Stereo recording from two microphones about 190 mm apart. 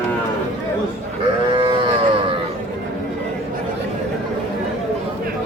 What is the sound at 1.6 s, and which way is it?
Livestock, 25° right (ahead or behind).